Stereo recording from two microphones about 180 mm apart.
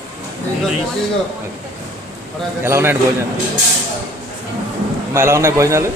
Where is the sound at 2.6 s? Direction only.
15° right (ahead or behind).